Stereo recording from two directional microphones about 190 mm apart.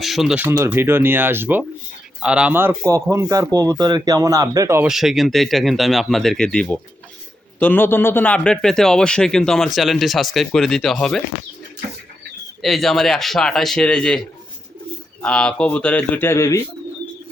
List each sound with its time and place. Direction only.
0.0 s speech: centre (ahead or behind)
0.4 s speech: 15° right (ahead or behind)
4.9 s a man's voice: centre (ahead or behind)
12.6 s a man's voice: centre (ahead or behind)